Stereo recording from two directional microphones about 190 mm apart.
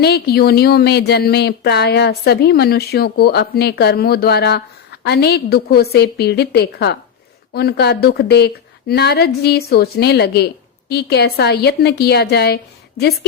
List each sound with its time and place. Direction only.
0.0 s speech: 55° left (ahead or behind)